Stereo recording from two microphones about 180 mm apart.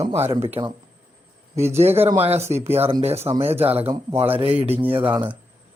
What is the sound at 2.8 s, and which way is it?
Speech, 35° right (ahead or behind).